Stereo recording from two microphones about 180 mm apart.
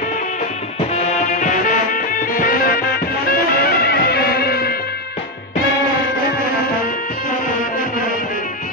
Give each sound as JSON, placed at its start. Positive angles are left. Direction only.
{"t": 2.0, "sound": "music", "side_deg": 50}
{"t": 3.8, "sound": "music", "side_deg": 60}